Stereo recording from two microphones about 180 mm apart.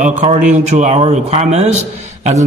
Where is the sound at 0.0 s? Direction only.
40° right (ahead or behind).